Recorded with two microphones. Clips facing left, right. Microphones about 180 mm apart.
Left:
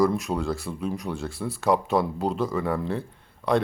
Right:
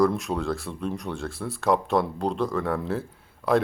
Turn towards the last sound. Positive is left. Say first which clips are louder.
# right 1 dB
turn(degrees=-5)  # may be behind; listen again after turning